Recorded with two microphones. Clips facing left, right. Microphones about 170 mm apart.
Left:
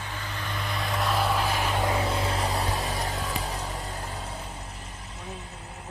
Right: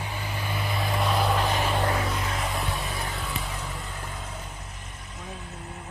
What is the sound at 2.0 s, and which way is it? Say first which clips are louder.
Vehicle: left 2 dB; 30° left (ahead or behind).